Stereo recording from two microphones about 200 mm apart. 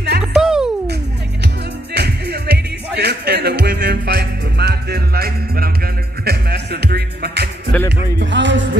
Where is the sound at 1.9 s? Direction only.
55° right (ahead or behind).